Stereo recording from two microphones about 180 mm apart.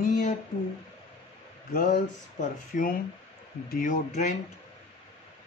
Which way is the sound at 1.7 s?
50° left (ahead or behind).